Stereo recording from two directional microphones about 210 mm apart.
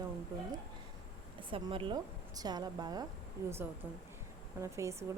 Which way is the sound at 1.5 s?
25° right (ahead or behind).